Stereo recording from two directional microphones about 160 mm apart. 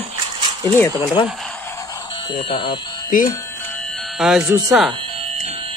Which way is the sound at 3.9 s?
Centre (ahead or behind).